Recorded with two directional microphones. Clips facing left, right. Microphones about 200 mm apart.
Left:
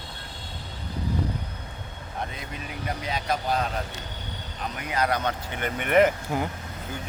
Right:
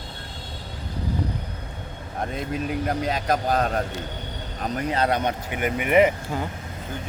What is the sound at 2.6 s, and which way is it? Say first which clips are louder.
Speech: right 7 dB; 45° right (ahead or behind).